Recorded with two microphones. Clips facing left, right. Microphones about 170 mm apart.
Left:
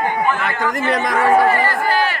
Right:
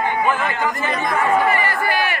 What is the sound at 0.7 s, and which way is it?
Chatter, 80° left.